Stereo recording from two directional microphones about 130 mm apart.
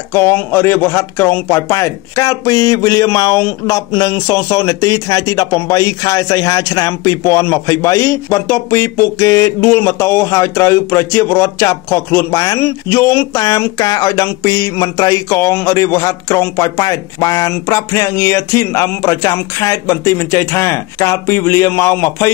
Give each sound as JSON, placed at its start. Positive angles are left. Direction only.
{"t": 0.1, "sound": "speech", "side_deg": 15}